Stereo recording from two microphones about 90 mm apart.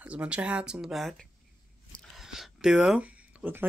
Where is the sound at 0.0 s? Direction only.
15° right (ahead or behind).